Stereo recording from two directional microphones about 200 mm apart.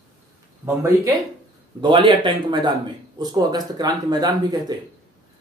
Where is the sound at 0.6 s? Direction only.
15° right (ahead or behind).